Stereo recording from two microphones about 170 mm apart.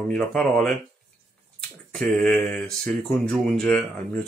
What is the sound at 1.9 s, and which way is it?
Speech, 5° left (ahead or behind).